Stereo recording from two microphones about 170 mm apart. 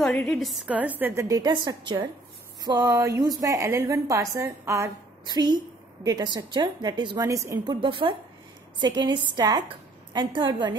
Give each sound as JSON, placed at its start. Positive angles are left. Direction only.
{"t": 0.0, "sound": "a woman's voice", "side_deg": 0}